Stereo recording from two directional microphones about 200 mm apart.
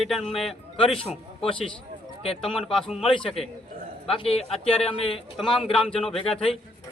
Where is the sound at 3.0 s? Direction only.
25° left (ahead or behind).